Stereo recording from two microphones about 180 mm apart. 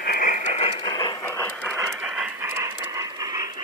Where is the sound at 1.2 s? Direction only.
10° left (ahead or behind).